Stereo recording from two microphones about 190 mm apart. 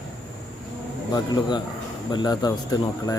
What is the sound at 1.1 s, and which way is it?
Speech, 20° left (ahead or behind).